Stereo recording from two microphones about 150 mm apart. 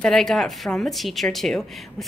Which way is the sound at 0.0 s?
5° left (ahead or behind).